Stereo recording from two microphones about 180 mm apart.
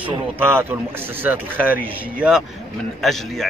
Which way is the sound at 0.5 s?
10° right (ahead or behind).